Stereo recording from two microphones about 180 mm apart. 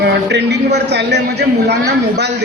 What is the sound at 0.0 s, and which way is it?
A man's voice, 70° right (ahead or behind).